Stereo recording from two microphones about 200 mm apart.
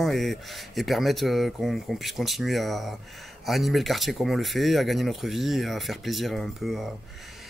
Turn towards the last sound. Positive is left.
turn(degrees=0)  # may be behind; listen again after turning